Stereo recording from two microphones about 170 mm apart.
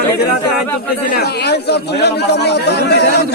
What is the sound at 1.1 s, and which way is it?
Speech, 70° left (ahead or behind).